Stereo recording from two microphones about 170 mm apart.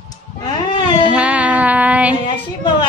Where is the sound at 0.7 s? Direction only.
25° left (ahead or behind).